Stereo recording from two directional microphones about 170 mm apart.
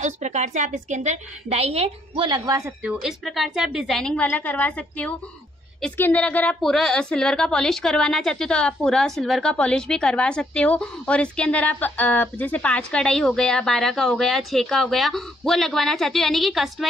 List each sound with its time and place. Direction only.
0.0 s a woman's voice: 45° right (ahead or behind); by 2.7 s 20° right (ahead or behind)
2.8 s a woman's voice: 5° right (ahead or behind)